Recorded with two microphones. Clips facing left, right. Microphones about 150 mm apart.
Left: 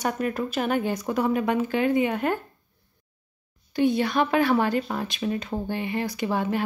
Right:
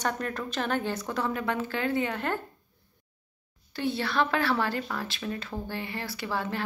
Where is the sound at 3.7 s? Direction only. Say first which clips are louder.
Left 7 dB; 15° left (ahead or behind).